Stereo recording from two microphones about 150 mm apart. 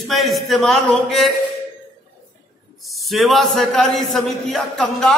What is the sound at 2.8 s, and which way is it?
A man's voice, centre (ahead or behind).